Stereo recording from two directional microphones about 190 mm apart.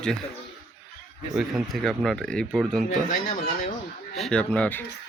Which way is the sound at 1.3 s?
Centre (ahead or behind).